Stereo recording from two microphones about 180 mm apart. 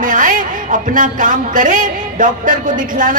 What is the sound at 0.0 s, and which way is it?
A man's voice, 45° right (ahead or behind).